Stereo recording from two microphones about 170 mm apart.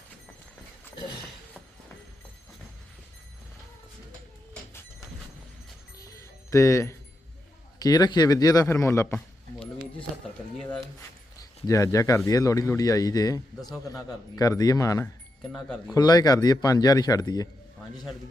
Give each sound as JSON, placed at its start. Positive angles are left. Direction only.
{"t": 6.0, "sound": "music", "side_deg": 20}
{"t": 7.8, "sound": "speech", "side_deg": 25}
{"t": 11.6, "sound": "speech", "side_deg": 20}
{"t": 15.5, "sound": "speech", "side_deg": 0}
{"t": 16.0, "sound": "speech", "side_deg": 25}